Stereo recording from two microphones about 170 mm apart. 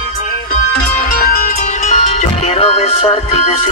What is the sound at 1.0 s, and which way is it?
Music, 55° left (ahead or behind).